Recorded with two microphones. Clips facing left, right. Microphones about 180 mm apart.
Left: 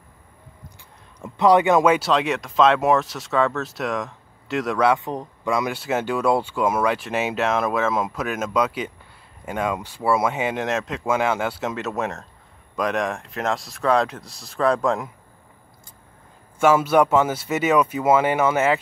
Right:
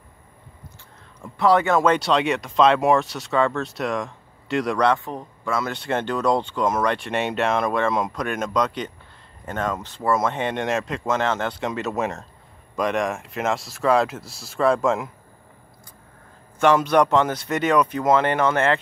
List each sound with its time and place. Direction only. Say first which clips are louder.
1.2 s speech: left 2 dB; 15° left (ahead or behind)
2.0 s speech: even; centre (ahead or behind)
4.9 s speech: left 2 dB; 15° left (ahead or behind)
5.8 s speech: left 1 dB; 5° left (ahead or behind)
16.5 s speech: left 1 dB; 5° left (ahead or behind)